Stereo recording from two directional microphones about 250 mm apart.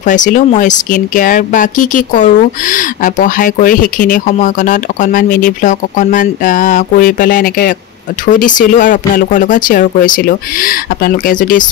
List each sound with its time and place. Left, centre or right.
0.0 s speech: left